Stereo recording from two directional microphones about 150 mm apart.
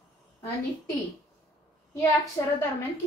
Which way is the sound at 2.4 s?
20° left (ahead or behind).